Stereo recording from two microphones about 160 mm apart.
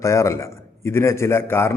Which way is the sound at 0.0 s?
20° left (ahead or behind).